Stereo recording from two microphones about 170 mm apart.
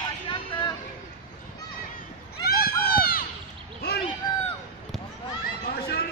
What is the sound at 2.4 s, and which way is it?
Run, 60° left (ahead or behind).